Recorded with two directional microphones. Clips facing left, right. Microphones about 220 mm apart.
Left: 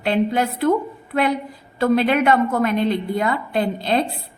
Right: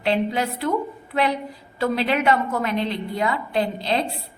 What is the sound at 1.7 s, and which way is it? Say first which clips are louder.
A woman's voice: left 5 dB; 50° left (ahead or behind).